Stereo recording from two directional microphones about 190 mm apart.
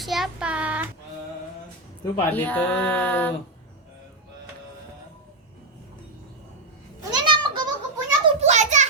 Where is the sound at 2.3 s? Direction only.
10° left (ahead or behind).